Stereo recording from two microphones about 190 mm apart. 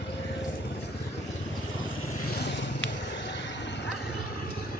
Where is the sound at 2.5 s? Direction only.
70° left (ahead or behind).